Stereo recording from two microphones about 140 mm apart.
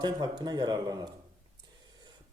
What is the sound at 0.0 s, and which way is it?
Speech, 30° right (ahead or behind).